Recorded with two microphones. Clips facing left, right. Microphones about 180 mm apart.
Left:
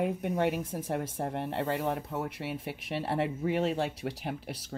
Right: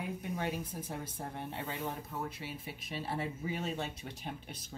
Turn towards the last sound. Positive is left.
turn(degrees=80)